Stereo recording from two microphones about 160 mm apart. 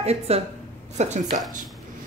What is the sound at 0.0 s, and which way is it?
A woman's voice, 40° right (ahead or behind).